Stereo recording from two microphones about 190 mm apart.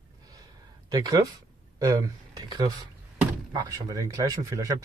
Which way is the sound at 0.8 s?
20° right (ahead or behind).